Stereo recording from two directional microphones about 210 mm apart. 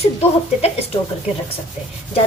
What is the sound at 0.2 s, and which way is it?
Speech, 25° left (ahead or behind).